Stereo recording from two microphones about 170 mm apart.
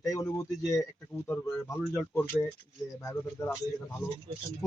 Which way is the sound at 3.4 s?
15° left (ahead or behind).